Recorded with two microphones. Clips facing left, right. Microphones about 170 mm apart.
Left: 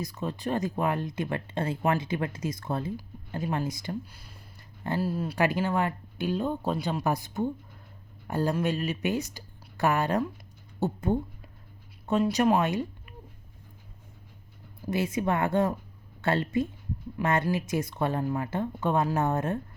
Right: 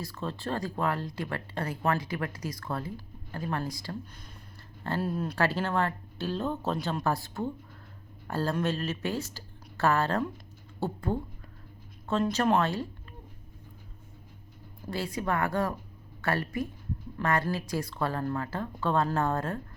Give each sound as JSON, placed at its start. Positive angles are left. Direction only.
{"t": 0.0, "sound": "speech", "side_deg": 15}
{"t": 4.0, "sound": "speech", "side_deg": 10}
{"t": 5.4, "sound": "speech", "side_deg": 15}
{"t": 14.8, "sound": "speech", "side_deg": 20}